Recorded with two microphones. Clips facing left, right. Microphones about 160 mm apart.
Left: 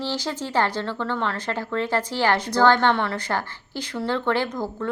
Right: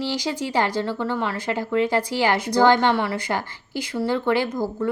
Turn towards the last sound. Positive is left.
turn(degrees=-10)  # may be behind; listen again after turning